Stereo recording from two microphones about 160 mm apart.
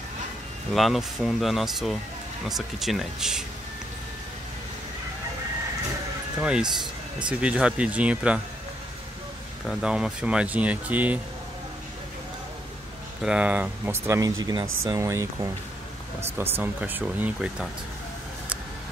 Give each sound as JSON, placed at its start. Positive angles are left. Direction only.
{"t": 0.7, "sound": "speech", "side_deg": 0}
{"t": 6.4, "sound": "speech", "side_deg": -5}
{"t": 9.7, "sound": "speech", "side_deg": -5}
{"t": 13.2, "sound": "speech", "side_deg": -5}